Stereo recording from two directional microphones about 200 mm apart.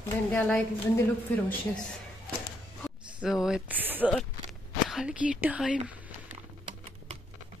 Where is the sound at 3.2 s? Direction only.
Centre (ahead or behind).